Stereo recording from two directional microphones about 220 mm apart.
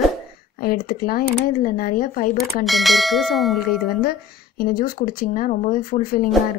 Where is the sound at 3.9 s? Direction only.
45° left (ahead or behind).